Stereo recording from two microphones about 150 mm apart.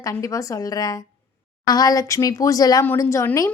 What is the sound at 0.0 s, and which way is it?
Speech, 20° left (ahead or behind).